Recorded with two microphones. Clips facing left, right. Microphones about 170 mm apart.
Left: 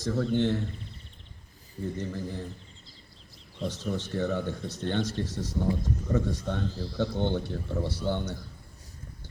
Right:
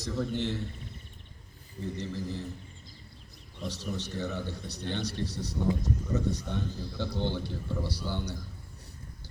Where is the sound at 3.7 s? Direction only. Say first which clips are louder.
Left 3 dB; 50° left (ahead or behind).